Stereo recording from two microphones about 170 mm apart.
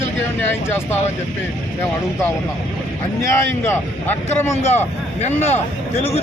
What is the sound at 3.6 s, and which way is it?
Speech, 15° left (ahead or behind).